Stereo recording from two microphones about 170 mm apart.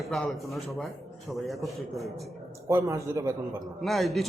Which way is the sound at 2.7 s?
15° right (ahead or behind).